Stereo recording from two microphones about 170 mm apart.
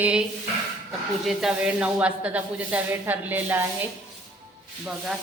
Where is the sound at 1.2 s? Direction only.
Centre (ahead or behind).